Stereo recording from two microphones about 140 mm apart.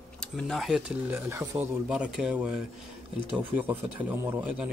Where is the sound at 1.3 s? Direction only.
20° right (ahead or behind).